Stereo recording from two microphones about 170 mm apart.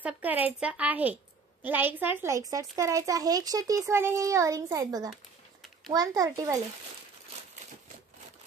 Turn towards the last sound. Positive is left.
turn(degrees=-20)  # may be behind; listen again after turning